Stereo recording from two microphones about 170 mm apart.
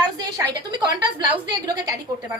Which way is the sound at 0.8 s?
30° right (ahead or behind).